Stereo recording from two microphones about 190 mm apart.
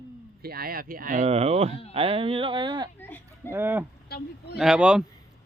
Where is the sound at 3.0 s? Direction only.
10° left (ahead or behind).